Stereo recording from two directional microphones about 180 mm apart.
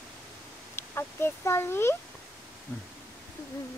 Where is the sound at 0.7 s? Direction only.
15° left (ahead or behind).